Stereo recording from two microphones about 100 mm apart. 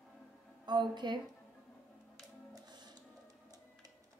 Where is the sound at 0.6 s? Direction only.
50° right (ahead or behind).